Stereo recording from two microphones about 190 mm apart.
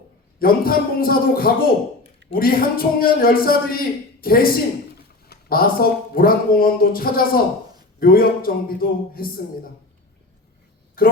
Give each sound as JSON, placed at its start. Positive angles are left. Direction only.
{"t": 0.3, "sound": "speech", "side_deg": 50}
{"t": 11.0, "sound": "speech", "side_deg": 50}